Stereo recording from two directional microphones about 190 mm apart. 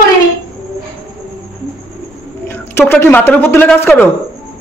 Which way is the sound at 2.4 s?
10° left (ahead or behind).